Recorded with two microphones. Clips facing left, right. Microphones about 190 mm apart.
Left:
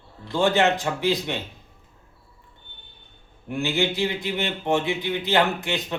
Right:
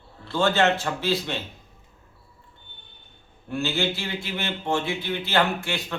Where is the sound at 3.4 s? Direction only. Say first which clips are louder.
Left 2 dB; 15° left (ahead or behind).